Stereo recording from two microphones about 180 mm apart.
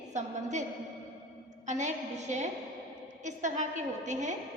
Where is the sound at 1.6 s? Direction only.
40° right (ahead or behind).